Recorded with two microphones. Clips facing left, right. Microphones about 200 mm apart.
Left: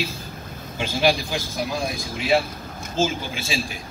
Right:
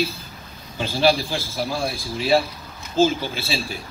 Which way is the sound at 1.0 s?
15° left (ahead or behind).